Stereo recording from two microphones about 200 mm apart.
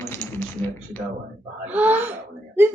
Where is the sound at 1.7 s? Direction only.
10° right (ahead or behind).